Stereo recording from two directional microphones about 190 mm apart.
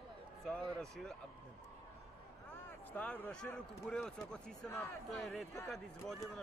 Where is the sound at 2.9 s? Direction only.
10° left (ahead or behind).